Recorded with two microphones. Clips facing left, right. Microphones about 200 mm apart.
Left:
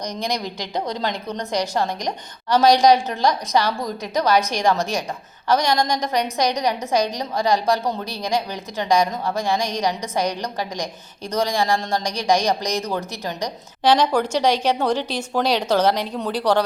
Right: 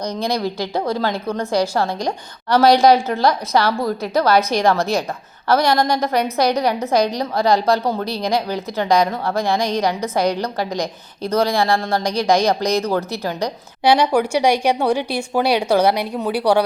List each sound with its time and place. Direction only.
0.2 s a woman's voice: 15° left (ahead or behind)
13.8 s speech: 10° right (ahead or behind)